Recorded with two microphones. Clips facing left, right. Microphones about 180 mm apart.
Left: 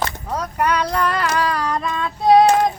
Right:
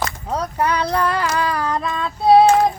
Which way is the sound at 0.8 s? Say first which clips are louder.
Right 1 dB; 10° right (ahead or behind).